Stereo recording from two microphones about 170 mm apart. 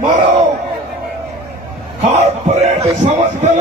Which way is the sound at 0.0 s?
50° right (ahead or behind).